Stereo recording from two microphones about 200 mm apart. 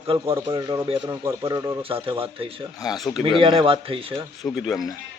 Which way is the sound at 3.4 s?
25° right (ahead or behind).